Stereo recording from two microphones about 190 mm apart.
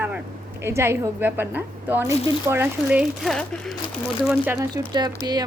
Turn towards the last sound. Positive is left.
turn(degrees=-20)  # may be behind; listen again after turning